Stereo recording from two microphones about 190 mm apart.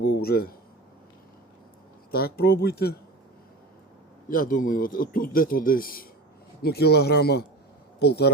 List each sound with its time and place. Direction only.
0.0 s speech: 55° left (ahead or behind)
2.1 s speech: 55° left (ahead or behind)
4.3 s speech: 45° left (ahead or behind)